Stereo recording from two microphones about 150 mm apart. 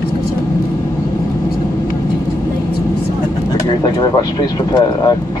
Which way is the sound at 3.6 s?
25° left (ahead or behind).